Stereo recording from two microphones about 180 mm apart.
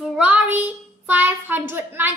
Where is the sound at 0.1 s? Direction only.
10° right (ahead or behind).